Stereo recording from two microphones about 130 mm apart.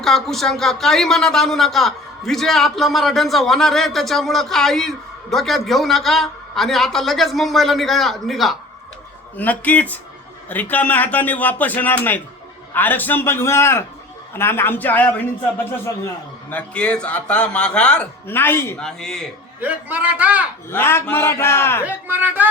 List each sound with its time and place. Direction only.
0.0 s speech: 5° left (ahead or behind)
9.4 s speech: 10° left (ahead or behind)
16.5 s speech: 10° left (ahead or behind)
18.8 s speech: 5° left (ahead or behind)
19.6 s a man's voice: 10° right (ahead or behind)
20.7 s a man's voice: 20° left (ahead or behind)
21.8 s a man's voice: 10° right (ahead or behind)